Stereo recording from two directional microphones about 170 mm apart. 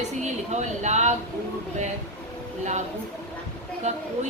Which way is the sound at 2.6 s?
45° right (ahead or behind).